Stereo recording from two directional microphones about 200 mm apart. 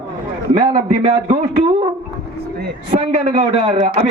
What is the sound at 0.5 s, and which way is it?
Speech, 25° right (ahead or behind).